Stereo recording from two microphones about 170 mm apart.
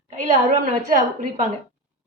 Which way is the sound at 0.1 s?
50° right (ahead or behind).